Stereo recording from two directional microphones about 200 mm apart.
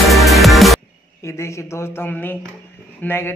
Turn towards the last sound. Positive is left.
turn(degrees=10)  # may be behind; listen again after turning